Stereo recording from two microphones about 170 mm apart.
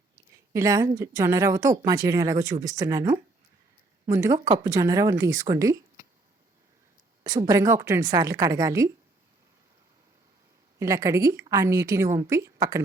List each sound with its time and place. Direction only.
0.5 s speech: 20° right (ahead or behind)
7.3 s speech: 20° right (ahead or behind)
10.8 s speech: 15° right (ahead or behind)